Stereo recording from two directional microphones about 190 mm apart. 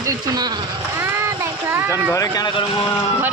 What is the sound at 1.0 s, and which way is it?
Child singing, 15° right (ahead or behind).